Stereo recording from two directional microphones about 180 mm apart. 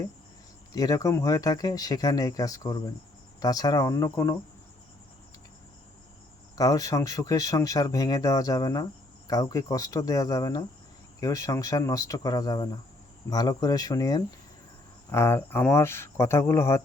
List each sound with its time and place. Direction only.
0.7 s speech: 20° left (ahead or behind)
6.6 s speech: 20° left (ahead or behind)